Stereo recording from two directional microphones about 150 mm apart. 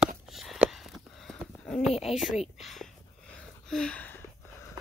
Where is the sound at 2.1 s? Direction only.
Centre (ahead or behind).